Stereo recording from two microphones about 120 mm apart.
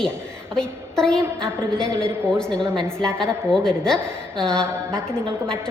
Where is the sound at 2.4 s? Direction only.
5° left (ahead or behind).